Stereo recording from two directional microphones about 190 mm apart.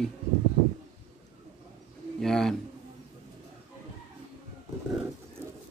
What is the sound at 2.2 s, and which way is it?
Speech, centre (ahead or behind).